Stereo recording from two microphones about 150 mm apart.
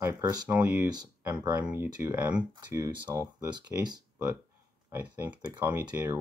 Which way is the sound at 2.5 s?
20° right (ahead or behind).